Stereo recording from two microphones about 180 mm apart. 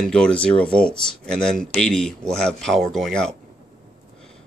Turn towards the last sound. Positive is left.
turn(degrees=5)  # may be behind; listen again after turning